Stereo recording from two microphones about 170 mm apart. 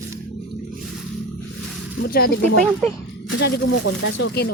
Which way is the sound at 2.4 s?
40° right (ahead or behind).